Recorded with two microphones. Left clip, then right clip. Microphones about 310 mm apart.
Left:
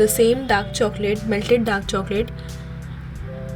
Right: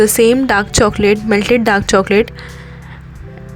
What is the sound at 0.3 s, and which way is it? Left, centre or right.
Speech, right.